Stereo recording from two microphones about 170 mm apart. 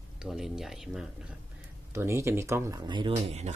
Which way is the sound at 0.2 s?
Centre (ahead or behind).